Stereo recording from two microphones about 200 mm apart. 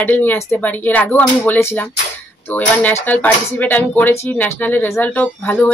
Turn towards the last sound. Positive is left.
turn(degrees=10)  # may be behind; listen again after turning